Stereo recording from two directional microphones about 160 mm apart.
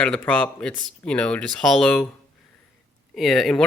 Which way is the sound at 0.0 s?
5° left (ahead or behind).